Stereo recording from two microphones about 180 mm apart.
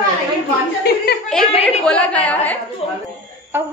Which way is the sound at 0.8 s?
65° left (ahead or behind).